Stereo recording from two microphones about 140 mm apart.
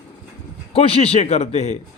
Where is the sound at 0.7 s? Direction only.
45° left (ahead or behind).